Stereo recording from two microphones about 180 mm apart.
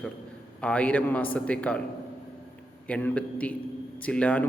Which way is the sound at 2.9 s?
10° left (ahead or behind).